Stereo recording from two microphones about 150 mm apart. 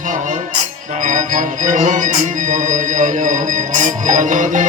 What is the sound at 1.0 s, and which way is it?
Music, 55° right (ahead or behind).